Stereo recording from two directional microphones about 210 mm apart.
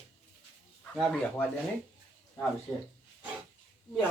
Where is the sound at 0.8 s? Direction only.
5° left (ahead or behind).